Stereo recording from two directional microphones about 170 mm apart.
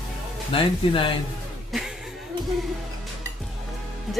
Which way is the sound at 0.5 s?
30° left (ahead or behind).